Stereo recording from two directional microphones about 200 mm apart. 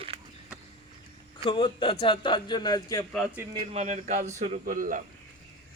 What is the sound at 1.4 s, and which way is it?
Speech, 25° left (ahead or behind).